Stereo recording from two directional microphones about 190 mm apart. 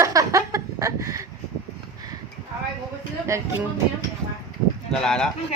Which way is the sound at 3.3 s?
15° right (ahead or behind).